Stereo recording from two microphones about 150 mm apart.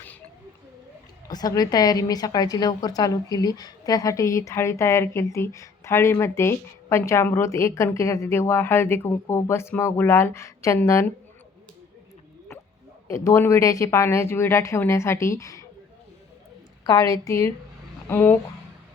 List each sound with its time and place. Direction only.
1.3 s a woman's voice: 25° left (ahead or behind)
13.1 s a woman's voice: 20° left (ahead or behind)
16.8 s a woman's voice: 20° left (ahead or behind)